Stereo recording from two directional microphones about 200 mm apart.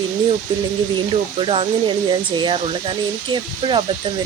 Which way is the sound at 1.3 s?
25° right (ahead or behind).